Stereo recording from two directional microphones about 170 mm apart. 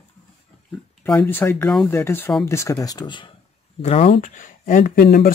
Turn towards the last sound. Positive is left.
turn(degrees=60)  # may be behind; listen again after turning